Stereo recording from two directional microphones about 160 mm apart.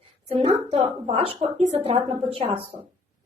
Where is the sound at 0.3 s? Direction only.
40° right (ahead or behind).